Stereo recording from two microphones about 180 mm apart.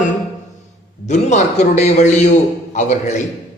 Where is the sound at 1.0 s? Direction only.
40° left (ahead or behind).